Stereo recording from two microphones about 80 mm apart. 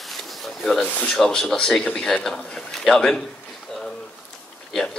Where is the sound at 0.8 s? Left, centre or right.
Left.